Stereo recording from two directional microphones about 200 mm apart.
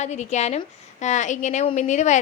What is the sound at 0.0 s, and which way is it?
A woman's voice, 35° left (ahead or behind).